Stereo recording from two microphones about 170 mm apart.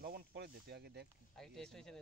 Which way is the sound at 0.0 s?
60° right (ahead or behind).